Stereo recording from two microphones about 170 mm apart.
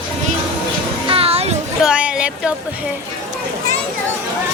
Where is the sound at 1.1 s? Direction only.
35° right (ahead or behind).